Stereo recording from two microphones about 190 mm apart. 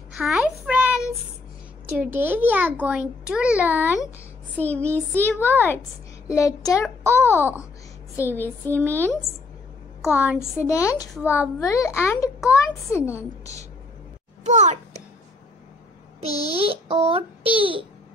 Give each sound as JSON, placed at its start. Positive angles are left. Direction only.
{"t": 0.2, "sound": "a sound", "side_deg": -5}
{"t": 1.9, "sound": "a child's voice", "side_deg": -10}
{"t": 4.6, "sound": "a child's voice", "side_deg": 10}
{"t": 7.2, "sound": "a child's voice", "side_deg": -10}
{"t": 8.2, "sound": "a child's voice", "side_deg": 10}
{"t": 10.0, "sound": "a child's voice", "side_deg": -5}
{"t": 10.7, "sound": "a child's voice", "side_deg": 15}
{"t": 11.1, "sound": "a child's voice", "side_deg": -10}
{"t": 11.6, "sound": "a child's voice", "side_deg": 15}
{"t": 14.4, "sound": "a sound", "side_deg": -40}
{"t": 16.4, "sound": "a child's voice", "side_deg": -30}